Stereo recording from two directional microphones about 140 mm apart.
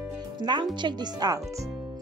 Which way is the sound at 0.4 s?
35° right (ahead or behind).